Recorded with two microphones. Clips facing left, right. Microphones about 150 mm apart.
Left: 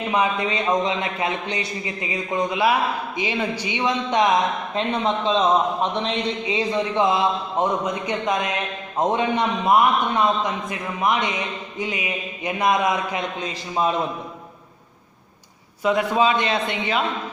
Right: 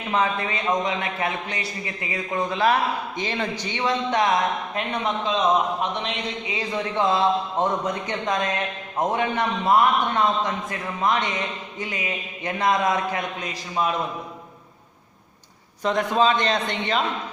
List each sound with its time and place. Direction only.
0.1 s a man's voice: 15° left (ahead or behind)
15.8 s a man's voice: 10° left (ahead or behind)